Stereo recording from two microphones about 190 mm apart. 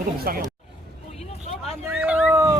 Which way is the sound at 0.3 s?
50° right (ahead or behind).